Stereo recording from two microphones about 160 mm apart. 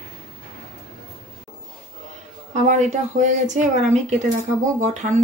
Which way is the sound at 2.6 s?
50° right (ahead or behind).